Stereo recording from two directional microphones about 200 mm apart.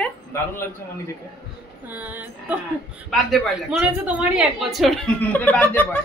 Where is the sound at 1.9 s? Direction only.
10° right (ahead or behind).